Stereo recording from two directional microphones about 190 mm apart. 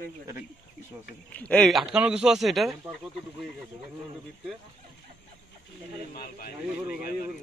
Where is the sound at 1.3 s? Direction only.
5° left (ahead or behind).